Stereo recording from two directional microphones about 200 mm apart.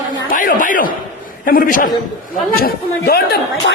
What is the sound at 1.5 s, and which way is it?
A man's voice, 45° left (ahead or behind).